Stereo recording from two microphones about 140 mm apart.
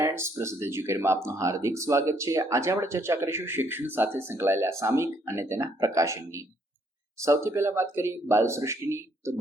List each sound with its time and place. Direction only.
0.0 s speech: 20° right (ahead or behind)